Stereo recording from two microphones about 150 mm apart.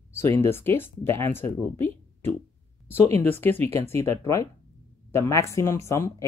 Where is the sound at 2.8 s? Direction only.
45° right (ahead or behind).